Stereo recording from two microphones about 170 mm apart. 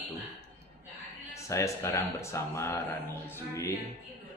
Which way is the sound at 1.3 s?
20° left (ahead or behind).